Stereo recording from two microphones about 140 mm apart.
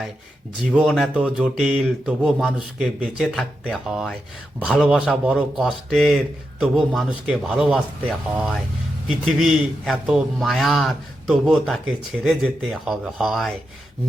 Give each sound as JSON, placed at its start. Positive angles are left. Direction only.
{"t": 0.7, "sound": "speech", "side_deg": -5}
{"t": 9.0, "sound": "speech", "side_deg": -5}